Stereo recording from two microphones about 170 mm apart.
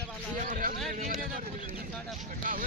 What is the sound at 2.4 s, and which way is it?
Speech, 50° right (ahead or behind).